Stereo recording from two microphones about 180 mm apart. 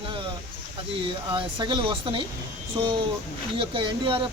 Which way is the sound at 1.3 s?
25° right (ahead or behind).